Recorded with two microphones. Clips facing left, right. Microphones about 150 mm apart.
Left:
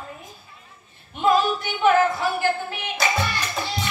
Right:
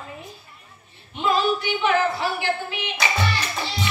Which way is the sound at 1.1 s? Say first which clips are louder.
Left 2 dB; 50° left (ahead or behind).